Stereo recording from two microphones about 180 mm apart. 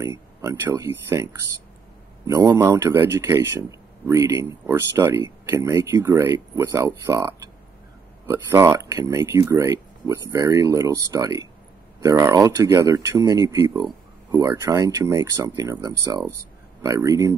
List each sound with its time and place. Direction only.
0.0 s speech: 15° right (ahead or behind)